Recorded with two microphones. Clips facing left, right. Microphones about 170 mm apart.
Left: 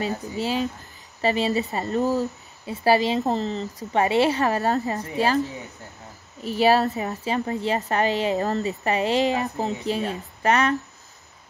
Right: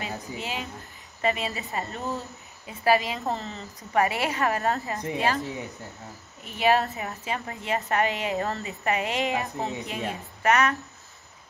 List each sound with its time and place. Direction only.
0.0 s a woman's voice: 35° left (ahead or behind)
6.4 s a woman's voice: 35° left (ahead or behind)